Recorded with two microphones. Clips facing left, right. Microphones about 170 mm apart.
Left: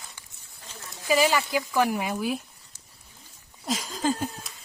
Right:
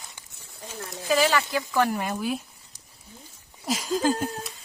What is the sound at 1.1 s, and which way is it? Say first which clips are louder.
Speech: even; 10° left (ahead or behind).